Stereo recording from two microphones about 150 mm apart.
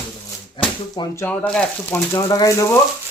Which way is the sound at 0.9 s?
25° left (ahead or behind).